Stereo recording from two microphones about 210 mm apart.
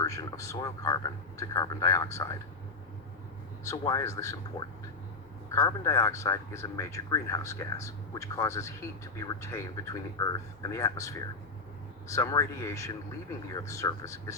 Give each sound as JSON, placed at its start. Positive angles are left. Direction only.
{"t": 0.0, "sound": "a man's voice", "side_deg": 15}
{"t": 3.7, "sound": "a man's voice", "side_deg": 15}